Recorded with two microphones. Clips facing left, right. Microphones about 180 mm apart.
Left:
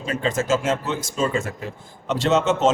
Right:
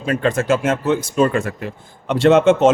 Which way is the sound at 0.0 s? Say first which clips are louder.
Right 5 dB; 60° right (ahead or behind).